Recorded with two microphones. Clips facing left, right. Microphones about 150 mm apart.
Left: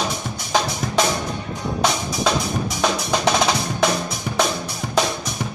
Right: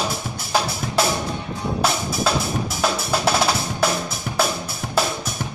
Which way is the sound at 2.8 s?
5° right (ahead or behind).